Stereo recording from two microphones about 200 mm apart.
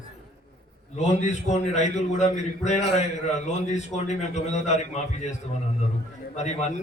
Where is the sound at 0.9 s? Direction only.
35° left (ahead or behind).